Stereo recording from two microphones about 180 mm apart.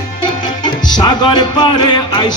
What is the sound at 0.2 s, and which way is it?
Music, 25° left (ahead or behind).